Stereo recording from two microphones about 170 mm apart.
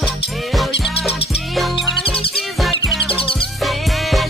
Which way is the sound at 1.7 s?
30° left (ahead or behind).